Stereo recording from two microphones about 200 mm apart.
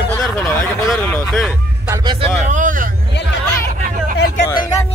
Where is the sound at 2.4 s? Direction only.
40° right (ahead or behind).